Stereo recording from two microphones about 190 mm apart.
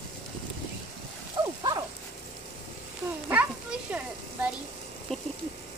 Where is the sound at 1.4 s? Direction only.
20° right (ahead or behind).